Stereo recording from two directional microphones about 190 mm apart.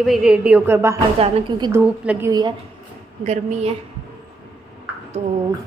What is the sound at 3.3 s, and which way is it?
Speech, 35° right (ahead or behind).